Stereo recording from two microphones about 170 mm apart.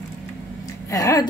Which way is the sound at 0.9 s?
20° left (ahead or behind).